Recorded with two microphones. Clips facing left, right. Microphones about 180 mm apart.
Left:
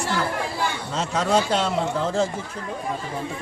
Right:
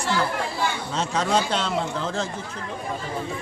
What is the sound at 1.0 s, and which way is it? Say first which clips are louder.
Speech: left 2 dB; 5° left (ahead or behind).